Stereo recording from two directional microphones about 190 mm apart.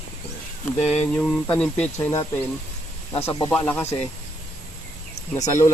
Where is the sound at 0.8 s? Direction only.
35° left (ahead or behind).